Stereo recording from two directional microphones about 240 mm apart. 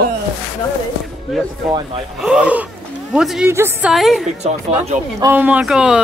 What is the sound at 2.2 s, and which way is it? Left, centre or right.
A woman's voice, centre.